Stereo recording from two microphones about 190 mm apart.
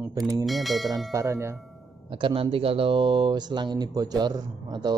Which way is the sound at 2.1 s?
25° right (ahead or behind).